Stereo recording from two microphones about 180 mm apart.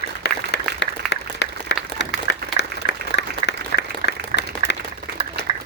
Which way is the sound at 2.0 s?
75° left (ahead or behind).